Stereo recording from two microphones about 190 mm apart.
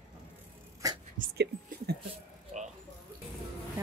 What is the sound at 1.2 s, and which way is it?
Speech, 55° right (ahead or behind).